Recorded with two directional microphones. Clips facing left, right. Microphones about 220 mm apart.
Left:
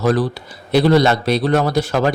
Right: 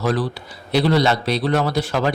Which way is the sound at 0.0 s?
45° left (ahead or behind).